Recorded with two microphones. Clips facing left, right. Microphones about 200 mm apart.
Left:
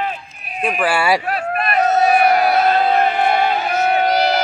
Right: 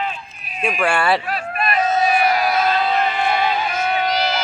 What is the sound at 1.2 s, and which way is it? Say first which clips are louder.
Crowd: left 3 dB; 55° left (ahead or behind).